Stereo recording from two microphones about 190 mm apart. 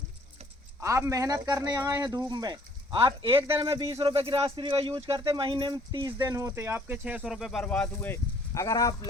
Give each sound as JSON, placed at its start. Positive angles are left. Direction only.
{"t": 0.8, "sound": "speech", "side_deg": -15}